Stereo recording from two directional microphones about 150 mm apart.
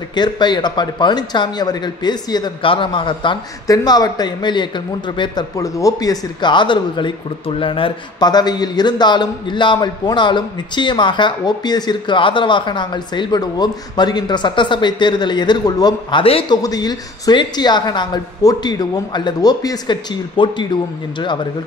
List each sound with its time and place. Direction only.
0.1 s speech: 30° left (ahead or behind)
16.6 s a woman's voice: 25° left (ahead or behind)